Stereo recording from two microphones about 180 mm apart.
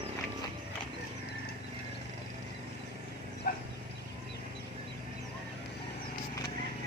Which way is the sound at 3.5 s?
55° left (ahead or behind).